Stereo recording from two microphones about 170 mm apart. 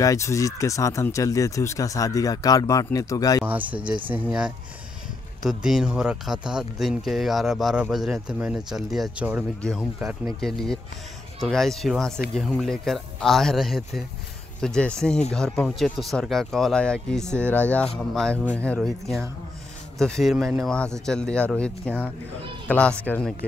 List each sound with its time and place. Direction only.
0.0 s speech: 20° left (ahead or behind)
3.4 s speech: 10° right (ahead or behind); by 23.3 s 10° left (ahead or behind)